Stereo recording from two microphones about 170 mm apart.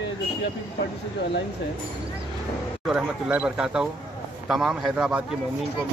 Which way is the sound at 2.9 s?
5° right (ahead or behind).